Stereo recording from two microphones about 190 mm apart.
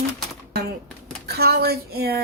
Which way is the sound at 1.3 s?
55° right (ahead or behind).